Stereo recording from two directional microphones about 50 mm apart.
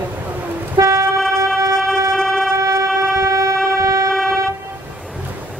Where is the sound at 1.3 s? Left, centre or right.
Right.